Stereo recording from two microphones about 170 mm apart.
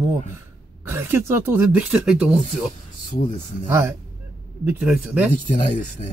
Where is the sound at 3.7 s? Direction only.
15° right (ahead or behind).